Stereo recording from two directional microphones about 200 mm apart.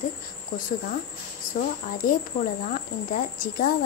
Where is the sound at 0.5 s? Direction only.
45° left (ahead or behind).